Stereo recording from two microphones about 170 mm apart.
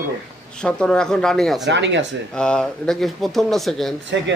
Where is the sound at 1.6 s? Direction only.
90° right.